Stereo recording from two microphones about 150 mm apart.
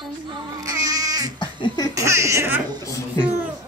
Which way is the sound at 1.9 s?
20° right (ahead or behind).